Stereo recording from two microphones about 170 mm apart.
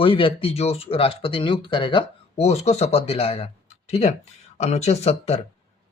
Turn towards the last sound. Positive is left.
turn(degrees=40)  # may be behind; listen again after turning